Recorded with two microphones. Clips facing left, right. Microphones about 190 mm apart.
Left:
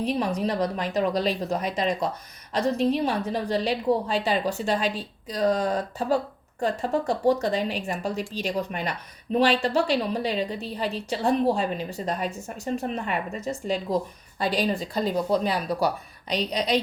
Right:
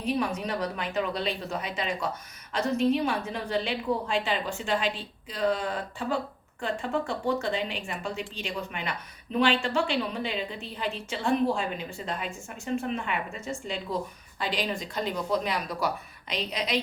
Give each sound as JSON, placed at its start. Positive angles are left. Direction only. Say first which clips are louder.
{"t": 0.0, "sound": "a woman's voice", "louder": "left 3 dB", "side_deg": 35}